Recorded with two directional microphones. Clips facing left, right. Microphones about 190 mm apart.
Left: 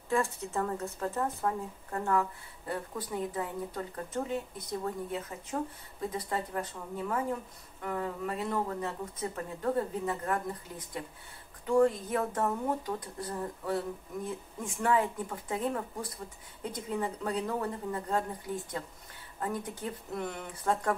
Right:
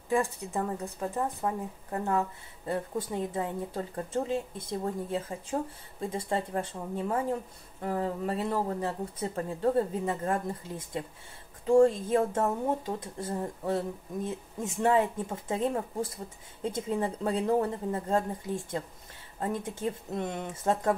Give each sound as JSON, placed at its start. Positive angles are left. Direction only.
{"t": 0.1, "sound": "a woman's voice", "side_deg": -15}
{"t": 19.4, "sound": "a woman's voice", "side_deg": -25}